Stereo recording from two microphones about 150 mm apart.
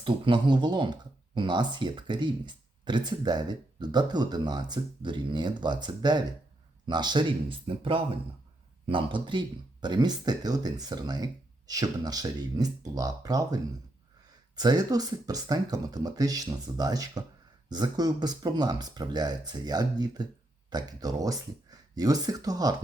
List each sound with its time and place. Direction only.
0.0 s speech: 30° right (ahead or behind)